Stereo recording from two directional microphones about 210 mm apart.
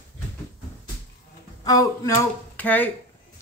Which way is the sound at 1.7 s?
15° left (ahead or behind).